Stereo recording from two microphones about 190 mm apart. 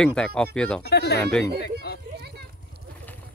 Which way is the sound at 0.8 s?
60° left (ahead or behind).